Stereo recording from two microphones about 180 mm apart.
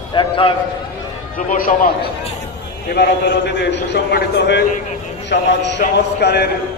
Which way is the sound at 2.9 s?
70° left (ahead or behind).